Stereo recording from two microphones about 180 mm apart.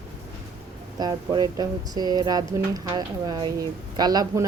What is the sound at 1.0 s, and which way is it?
Speech, 25° right (ahead or behind).